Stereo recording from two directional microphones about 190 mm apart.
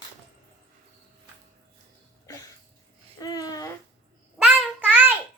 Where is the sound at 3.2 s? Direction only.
20° left (ahead or behind).